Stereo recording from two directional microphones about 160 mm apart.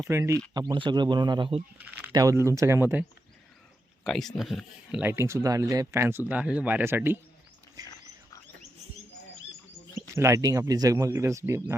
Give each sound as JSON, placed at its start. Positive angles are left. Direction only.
{"t": 0.1, "sound": "speech", "side_deg": -15}
{"t": 0.5, "sound": "a man's voice", "side_deg": -30}
{"t": 1.8, "sound": "a sound", "side_deg": -10}
{"t": 2.1, "sound": "speech", "side_deg": -20}
{"t": 4.0, "sound": "speech", "side_deg": 0}
{"t": 7.8, "sound": "a man's voice", "side_deg": -25}
{"t": 10.2, "sound": "speech", "side_deg": -20}